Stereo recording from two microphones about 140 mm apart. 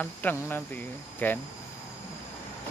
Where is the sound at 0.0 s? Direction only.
15° left (ahead or behind).